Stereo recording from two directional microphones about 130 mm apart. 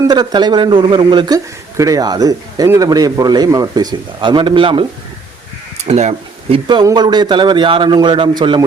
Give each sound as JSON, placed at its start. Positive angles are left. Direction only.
{"t": 0.1, "sound": "a man's voice", "side_deg": -30}
{"t": 1.7, "sound": "a man's voice", "side_deg": -25}
{"t": 5.7, "sound": "speech", "side_deg": -60}
{"t": 6.8, "sound": "a man's voice", "side_deg": -35}